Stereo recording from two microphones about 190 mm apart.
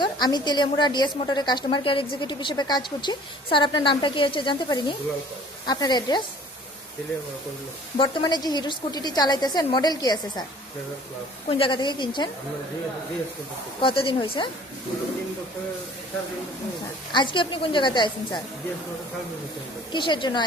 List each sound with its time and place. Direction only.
0.0 s a woman's voice: 20° left (ahead or behind)
7.9 s a woman's voice: 25° left (ahead or behind)
11.5 s a woman's voice: 25° left (ahead or behind)
13.8 s a woman's voice: 30° left (ahead or behind)
17.1 s a woman's voice: 25° left (ahead or behind)
19.9 s a woman's voice: 25° left (ahead or behind)